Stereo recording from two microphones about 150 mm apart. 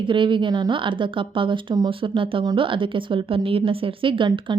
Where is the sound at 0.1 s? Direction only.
35° right (ahead or behind).